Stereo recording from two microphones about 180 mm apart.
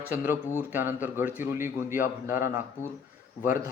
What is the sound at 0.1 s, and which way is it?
A man's voice, 10° right (ahead or behind).